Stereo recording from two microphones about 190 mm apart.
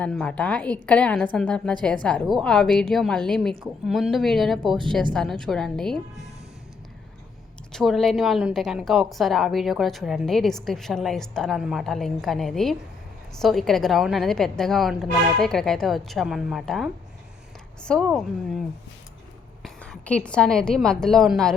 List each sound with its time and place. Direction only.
0.0 s a woman's voice: 5° left (ahead or behind)
7.7 s a woman's voice: centre (ahead or behind)
19.6 s a woman's voice: 5° left (ahead or behind)